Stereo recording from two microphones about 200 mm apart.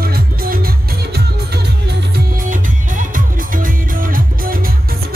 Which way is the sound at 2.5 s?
40° right (ahead or behind).